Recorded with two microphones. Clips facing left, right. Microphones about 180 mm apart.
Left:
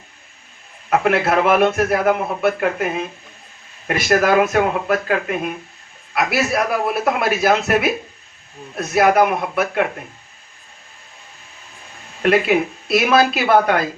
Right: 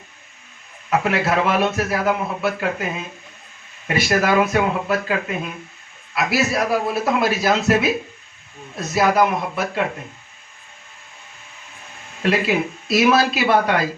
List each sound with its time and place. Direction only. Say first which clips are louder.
0.9 s a man's voice: left 3 dB; 55° left (ahead or behind)
12.2 s a man's voice: left 4 dB; 55° left (ahead or behind)